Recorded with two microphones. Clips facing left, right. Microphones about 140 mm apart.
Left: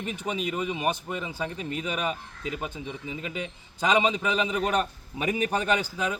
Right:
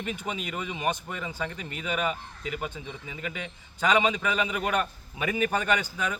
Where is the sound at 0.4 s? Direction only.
30° left (ahead or behind).